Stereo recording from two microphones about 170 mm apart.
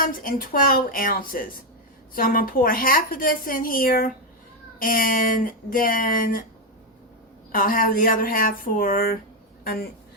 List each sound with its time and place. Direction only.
0.0 s a woman's voice: 55° left (ahead or behind)
7.5 s a woman's voice: 55° left (ahead or behind)